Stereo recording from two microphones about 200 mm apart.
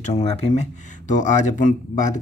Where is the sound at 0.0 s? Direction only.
30° left (ahead or behind).